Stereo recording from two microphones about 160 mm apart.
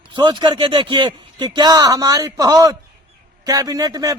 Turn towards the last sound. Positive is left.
turn(degrees=-20)  # may be behind; listen again after turning